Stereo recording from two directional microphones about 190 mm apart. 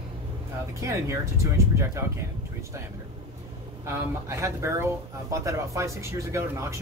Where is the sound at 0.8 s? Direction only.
15° right (ahead or behind).